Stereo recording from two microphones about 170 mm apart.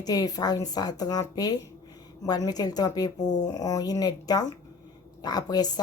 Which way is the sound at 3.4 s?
20° left (ahead or behind).